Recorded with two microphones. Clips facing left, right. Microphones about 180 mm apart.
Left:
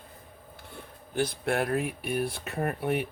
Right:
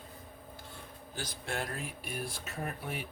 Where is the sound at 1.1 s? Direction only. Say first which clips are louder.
Left 11 dB; 60° left (ahead or behind).